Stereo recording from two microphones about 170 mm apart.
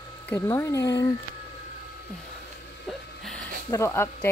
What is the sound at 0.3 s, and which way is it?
Speech, 15° left (ahead or behind).